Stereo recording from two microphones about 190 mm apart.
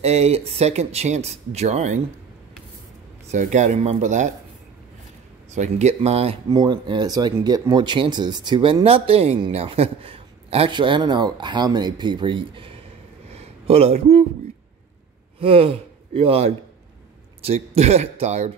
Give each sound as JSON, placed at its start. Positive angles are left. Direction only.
{"t": 0.0, "sound": "speech", "side_deg": -35}
{"t": 3.3, "sound": "speech", "side_deg": -40}
{"t": 5.5, "sound": "speech", "side_deg": -35}
{"t": 6.5, "sound": "speech", "side_deg": -20}
{"t": 13.3, "sound": "a sound", "side_deg": -30}
{"t": 15.3, "sound": "speech", "side_deg": -30}